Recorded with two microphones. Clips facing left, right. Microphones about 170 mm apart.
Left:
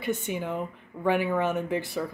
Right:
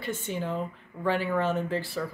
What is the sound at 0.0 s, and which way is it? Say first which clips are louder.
Speech: left 2 dB; 15° left (ahead or behind).